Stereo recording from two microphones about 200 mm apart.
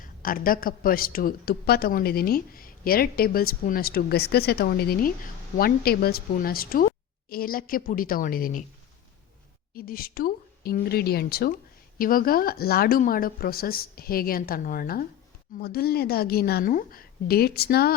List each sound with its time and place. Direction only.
0.0 s a woman's voice: 45° left (ahead or behind)
9.7 s a woman's voice: 45° left (ahead or behind)